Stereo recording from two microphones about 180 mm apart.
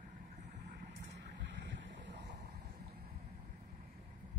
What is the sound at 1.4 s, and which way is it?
Boat, 80° right.